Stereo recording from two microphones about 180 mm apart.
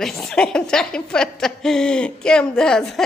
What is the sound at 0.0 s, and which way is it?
A woman's voice, centre (ahead or behind).